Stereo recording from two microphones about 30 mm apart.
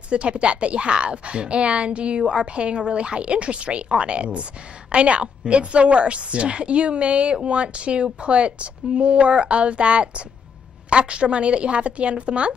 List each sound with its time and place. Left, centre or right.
0.1 s a woman's voice: right